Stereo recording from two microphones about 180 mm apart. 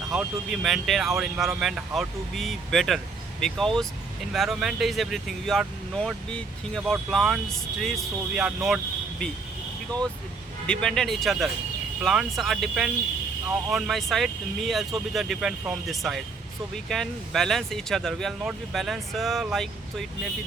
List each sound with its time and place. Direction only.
0.1 s speech: centre (ahead or behind)
10.7 s speech: 5° left (ahead or behind)